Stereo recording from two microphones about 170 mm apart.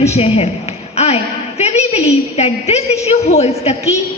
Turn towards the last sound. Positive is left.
turn(degrees=40)  # may be behind; listen again after turning